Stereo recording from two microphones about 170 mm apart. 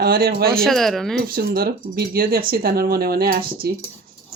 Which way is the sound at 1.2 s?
60° right (ahead or behind).